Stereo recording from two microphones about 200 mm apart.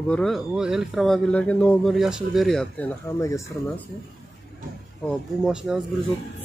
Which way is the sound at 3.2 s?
15° left (ahead or behind).